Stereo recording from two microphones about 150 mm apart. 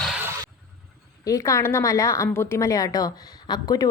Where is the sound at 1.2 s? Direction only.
20° left (ahead or behind).